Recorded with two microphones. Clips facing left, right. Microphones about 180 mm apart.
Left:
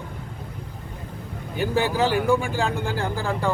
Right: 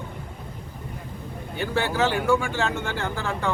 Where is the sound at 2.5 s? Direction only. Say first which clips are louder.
Left 1 dB; 35° left (ahead or behind).